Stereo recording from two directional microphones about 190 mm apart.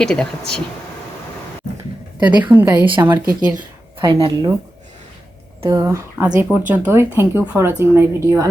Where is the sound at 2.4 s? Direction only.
10° right (ahead or behind).